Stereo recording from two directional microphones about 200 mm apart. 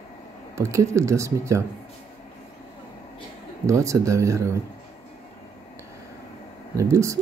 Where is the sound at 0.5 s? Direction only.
15° right (ahead or behind).